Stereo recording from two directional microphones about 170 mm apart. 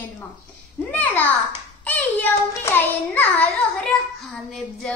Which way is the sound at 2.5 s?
15° left (ahead or behind).